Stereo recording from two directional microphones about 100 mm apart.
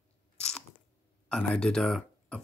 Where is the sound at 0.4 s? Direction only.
5° left (ahead or behind).